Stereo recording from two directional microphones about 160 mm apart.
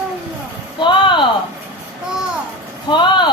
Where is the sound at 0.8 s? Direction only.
30° left (ahead or behind).